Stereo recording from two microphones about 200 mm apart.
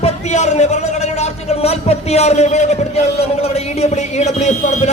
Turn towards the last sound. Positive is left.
turn(degrees=35)  # may be behind; listen again after turning